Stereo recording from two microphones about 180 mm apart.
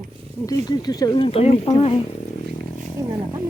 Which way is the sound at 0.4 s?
20° left (ahead or behind).